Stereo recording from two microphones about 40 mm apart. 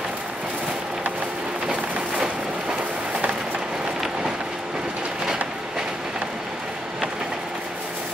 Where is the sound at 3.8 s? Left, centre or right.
Centre.